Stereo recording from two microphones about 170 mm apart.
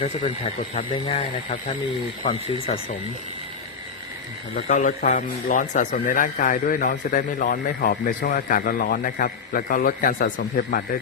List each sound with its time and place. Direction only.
0.0 s speech: 40° left (ahead or behind)
4.5 s a man's voice: 45° left (ahead or behind)